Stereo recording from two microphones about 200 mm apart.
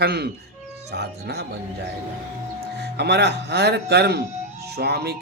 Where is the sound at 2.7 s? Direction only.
55° right (ahead or behind).